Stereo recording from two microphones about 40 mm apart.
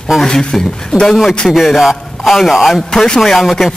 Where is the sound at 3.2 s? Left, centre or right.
Centre.